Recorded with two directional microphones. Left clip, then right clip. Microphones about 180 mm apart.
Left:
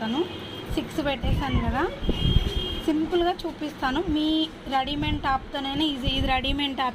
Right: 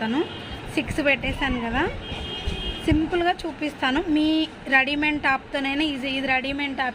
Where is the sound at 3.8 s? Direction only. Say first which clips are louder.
Right 3 dB; 25° right (ahead or behind).